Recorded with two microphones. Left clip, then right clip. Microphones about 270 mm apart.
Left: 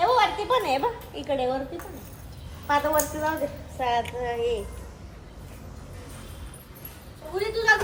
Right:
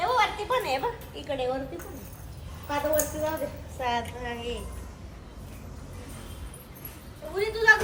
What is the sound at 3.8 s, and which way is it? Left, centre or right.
Speech, left.